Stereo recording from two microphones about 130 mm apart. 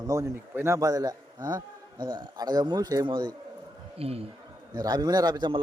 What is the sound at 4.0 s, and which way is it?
Speech, 50° right (ahead or behind).